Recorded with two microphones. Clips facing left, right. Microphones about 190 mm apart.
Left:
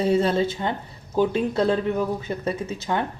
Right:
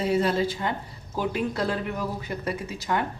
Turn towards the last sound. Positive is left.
turn(degrees=25)  # may be behind; listen again after turning